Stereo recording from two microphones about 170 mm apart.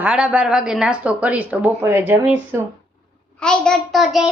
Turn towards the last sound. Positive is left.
turn(degrees=0)  # may be behind; listen again after turning